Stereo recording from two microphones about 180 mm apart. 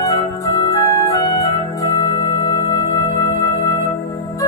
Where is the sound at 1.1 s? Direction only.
20° left (ahead or behind).